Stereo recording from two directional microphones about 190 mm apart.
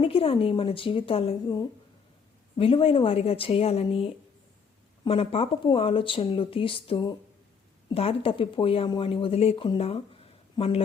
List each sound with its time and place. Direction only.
0.0 s speech: 30° left (ahead or behind)